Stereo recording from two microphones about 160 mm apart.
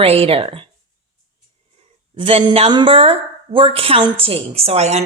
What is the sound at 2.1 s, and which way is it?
A woman's voice, 35° right (ahead or behind).